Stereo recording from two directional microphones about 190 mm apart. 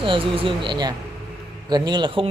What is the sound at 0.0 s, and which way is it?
Speech, 25° right (ahead or behind).